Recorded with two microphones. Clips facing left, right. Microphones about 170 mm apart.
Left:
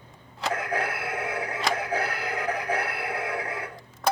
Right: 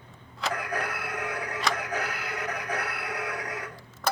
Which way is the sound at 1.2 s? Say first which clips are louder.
Left 2 dB; 25° left (ahead or behind).